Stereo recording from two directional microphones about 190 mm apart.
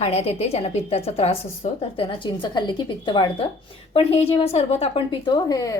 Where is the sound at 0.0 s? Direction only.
35° left (ahead or behind).